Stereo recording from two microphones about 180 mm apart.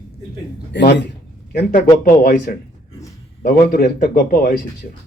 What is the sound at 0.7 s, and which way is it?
Speech, 70° left (ahead or behind).